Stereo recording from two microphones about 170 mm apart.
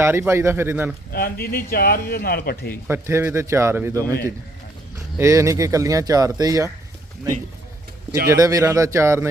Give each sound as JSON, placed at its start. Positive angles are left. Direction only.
{"t": 0.0, "sound": "a man's voice", "side_deg": -15}
{"t": 1.1, "sound": "a man's voice", "side_deg": 60}
{"t": 2.8, "sound": "a man's voice", "side_deg": -15}
{"t": 3.9, "sound": "a man's voice", "side_deg": 15}
{"t": 5.1, "sound": "speech", "side_deg": -20}
{"t": 8.3, "sound": "a man's voice", "side_deg": -20}